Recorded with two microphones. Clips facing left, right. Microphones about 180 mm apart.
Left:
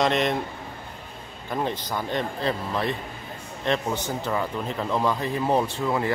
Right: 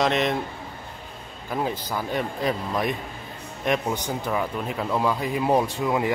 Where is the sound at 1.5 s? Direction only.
5° right (ahead or behind).